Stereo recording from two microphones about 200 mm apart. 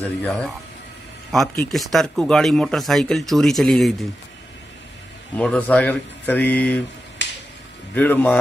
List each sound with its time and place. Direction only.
0.0 s speech: 5° left (ahead or behind)
5.4 s speech: 5° left (ahead or behind)
7.2 s music: 60° left (ahead or behind)
7.9 s speech: 10° left (ahead or behind)